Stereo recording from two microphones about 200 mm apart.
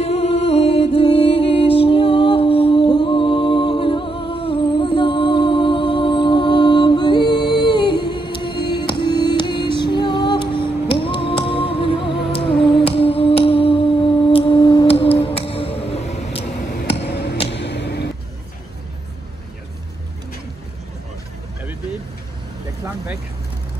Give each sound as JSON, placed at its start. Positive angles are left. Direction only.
{"t": 0.0, "sound": "music", "side_deg": 30}
{"t": 8.5, "sound": "music", "side_deg": 55}
{"t": 8.8, "sound": "music", "side_deg": 25}
{"t": 12.2, "sound": "music", "side_deg": 0}
{"t": 12.8, "sound": "music", "side_deg": 30}
{"t": 14.3, "sound": "a sound", "side_deg": 25}
{"t": 15.1, "sound": "music", "side_deg": 30}
{"t": 17.1, "sound": "a sound", "side_deg": 55}